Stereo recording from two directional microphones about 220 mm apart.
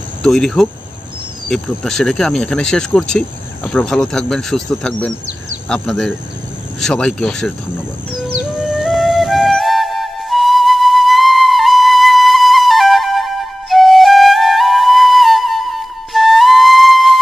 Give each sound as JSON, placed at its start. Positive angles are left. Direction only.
{"t": 0.2, "sound": "speech", "side_deg": 0}
{"t": 8.1, "sound": "music", "side_deg": -5}